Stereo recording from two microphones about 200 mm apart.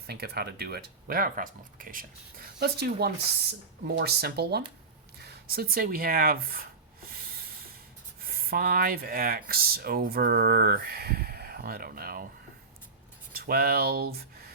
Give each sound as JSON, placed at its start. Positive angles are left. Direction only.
{"t": 0.1, "sound": "speech", "side_deg": -50}
{"t": 7.1, "sound": "hiss", "side_deg": -50}
{"t": 8.2, "sound": "speech", "side_deg": -50}
{"t": 13.3, "sound": "speech", "side_deg": -50}